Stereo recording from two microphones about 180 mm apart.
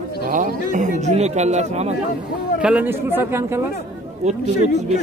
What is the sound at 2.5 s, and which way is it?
Speech, 5° right (ahead or behind).